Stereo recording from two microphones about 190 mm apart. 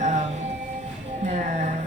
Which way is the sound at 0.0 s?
40° right (ahead or behind).